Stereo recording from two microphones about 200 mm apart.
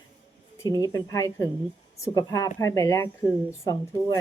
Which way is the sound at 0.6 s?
20° left (ahead or behind).